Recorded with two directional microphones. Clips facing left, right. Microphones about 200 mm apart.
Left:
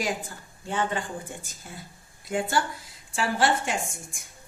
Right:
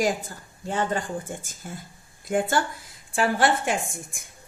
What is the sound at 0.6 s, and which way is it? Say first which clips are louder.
Speech: right 2 dB; 40° right (ahead or behind).